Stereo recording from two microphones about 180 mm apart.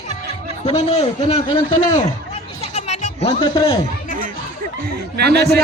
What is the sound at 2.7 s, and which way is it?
Music, 40° left (ahead or behind).